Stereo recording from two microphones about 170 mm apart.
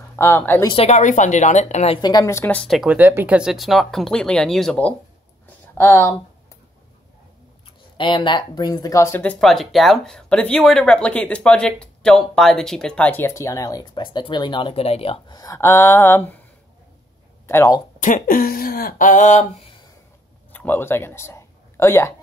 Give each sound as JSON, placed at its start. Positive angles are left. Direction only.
{"t": 0.1, "sound": "speech", "side_deg": 15}
{"t": 0.7, "sound": "a woman's voice", "side_deg": 35}
{"t": 2.0, "sound": "speech", "side_deg": 25}
{"t": 8.0, "sound": "speech", "side_deg": 30}
{"t": 15.3, "sound": "speech", "side_deg": 20}
{"t": 17.5, "sound": "speech", "side_deg": 20}
{"t": 18.0, "sound": "speech", "side_deg": 50}
{"t": 20.5, "sound": "speech", "side_deg": 10}